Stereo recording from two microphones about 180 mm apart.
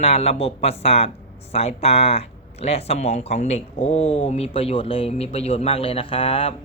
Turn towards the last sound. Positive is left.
turn(degrees=30)  # may be behind; listen again after turning